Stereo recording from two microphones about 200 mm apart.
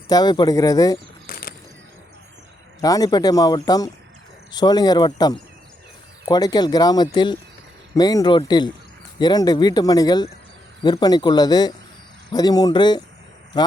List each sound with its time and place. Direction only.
0.1 s speech: 20° left (ahead or behind)
1.3 s a sound: 50° left (ahead or behind)
2.8 s speech: 20° left (ahead or behind)